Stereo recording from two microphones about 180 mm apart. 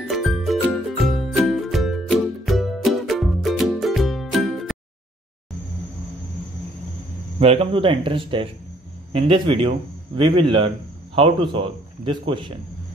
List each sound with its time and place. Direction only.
0.1 s music: centre (ahead or behind)
7.3 s a man's voice: 35° right (ahead or behind)